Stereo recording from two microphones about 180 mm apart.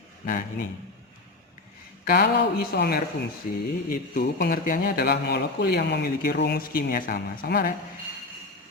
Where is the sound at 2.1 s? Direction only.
60° left (ahead or behind).